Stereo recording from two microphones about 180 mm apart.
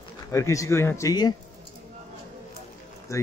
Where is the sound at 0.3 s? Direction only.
15° left (ahead or behind).